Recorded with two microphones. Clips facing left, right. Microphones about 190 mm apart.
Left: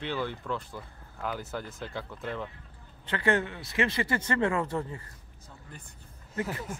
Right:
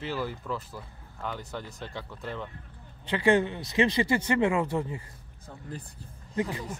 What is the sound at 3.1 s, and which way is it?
Speech, 15° right (ahead or behind).